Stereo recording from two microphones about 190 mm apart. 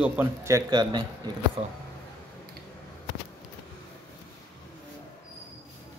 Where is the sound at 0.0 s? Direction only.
10° right (ahead or behind); by 1.7 s 30° right (ahead or behind).